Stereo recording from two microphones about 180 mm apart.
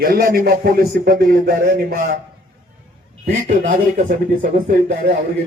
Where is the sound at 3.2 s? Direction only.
40° right (ahead or behind).